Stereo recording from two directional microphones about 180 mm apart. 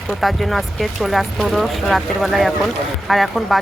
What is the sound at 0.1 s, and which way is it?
Speech, centre (ahead or behind).